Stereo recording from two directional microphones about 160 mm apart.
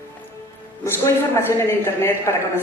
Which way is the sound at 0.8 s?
15° left (ahead or behind).